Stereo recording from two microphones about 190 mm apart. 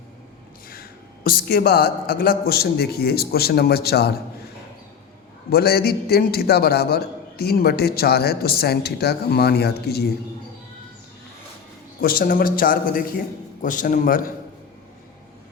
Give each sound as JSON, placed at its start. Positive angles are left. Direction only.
{"t": 0.7, "sound": "a man's voice", "side_deg": 50}
{"t": 5.5, "sound": "a man's voice", "side_deg": 55}
{"t": 11.9, "sound": "a man's voice", "side_deg": 50}